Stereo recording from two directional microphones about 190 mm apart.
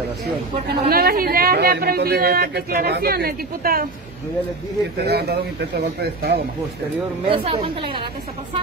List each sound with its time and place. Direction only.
0.7 s speech: 55° right (ahead or behind)
4.9 s speech: 60° right (ahead or behind)
7.2 s a woman's voice: 30° right (ahead or behind)